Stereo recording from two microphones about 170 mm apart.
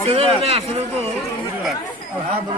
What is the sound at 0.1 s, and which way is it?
Speech, 35° right (ahead or behind).